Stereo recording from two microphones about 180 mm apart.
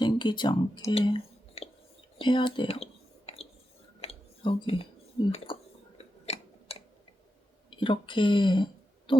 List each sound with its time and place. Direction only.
0.0 s speech: 25° left (ahead or behind)
2.1 s a sound: 25° left (ahead or behind)
4.0 s whispering: 30° left (ahead or behind)
5.5 s speech: 25° left (ahead or behind)
6.2 s tick-tock: 35° left (ahead or behind)
7.7 s speech: 30° left (ahead or behind)